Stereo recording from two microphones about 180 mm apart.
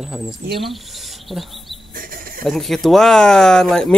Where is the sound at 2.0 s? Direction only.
50° right (ahead or behind).